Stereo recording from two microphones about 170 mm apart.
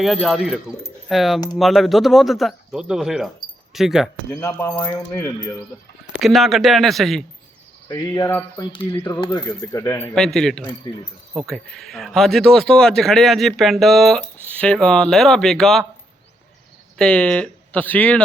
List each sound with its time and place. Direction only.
0.0 s speech: centre (ahead or behind)
4.3 s speech: 15° left (ahead or behind)
6.2 s speech: centre (ahead or behind)
7.9 s speech: 20° left (ahead or behind)
10.2 s speech: 5° left (ahead or behind)
17.0 s speech: 5° left (ahead or behind)